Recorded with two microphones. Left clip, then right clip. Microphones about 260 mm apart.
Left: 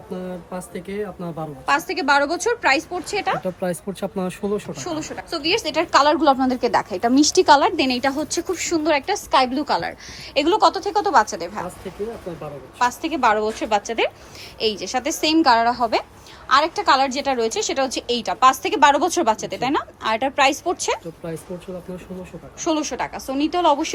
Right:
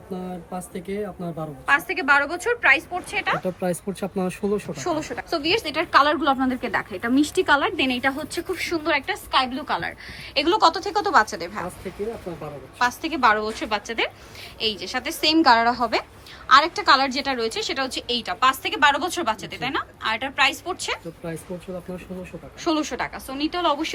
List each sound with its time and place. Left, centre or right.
0.1 s speech: centre
1.6 s speech: centre
3.4 s speech: centre
12.8 s a woman's voice: centre
22.6 s speech: centre